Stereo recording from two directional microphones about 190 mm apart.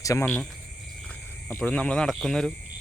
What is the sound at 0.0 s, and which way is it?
Speech, 15° left (ahead or behind).